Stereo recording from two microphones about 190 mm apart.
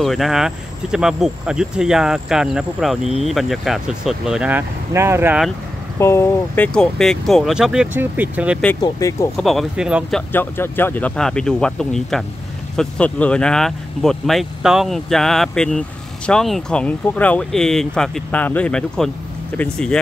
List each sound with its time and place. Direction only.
0.0 s speech: centre (ahead or behind)
5.9 s speech: 15° left (ahead or behind); by 8.5 s 10° right (ahead or behind)
8.8 s speech: 15° left (ahead or behind)
9.4 s speech: centre (ahead or behind)
10.3 s speech: 10° left (ahead or behind)